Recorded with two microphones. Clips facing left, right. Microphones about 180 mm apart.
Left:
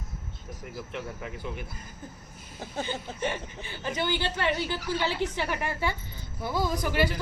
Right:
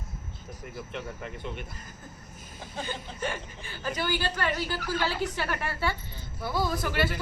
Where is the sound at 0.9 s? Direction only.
5° left (ahead or behind).